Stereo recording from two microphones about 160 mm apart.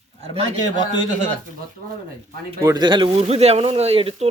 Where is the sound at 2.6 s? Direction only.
25° right (ahead or behind).